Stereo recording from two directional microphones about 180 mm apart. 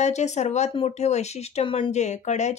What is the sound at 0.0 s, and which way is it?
Speech, 40° left (ahead or behind).